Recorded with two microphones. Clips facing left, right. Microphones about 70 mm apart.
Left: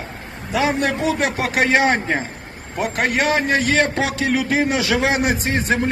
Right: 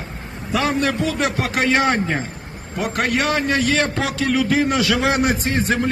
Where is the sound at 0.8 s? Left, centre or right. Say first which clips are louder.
Left 1 dB; left.